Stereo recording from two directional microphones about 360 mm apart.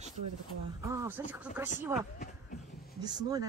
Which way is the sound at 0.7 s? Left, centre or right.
Centre.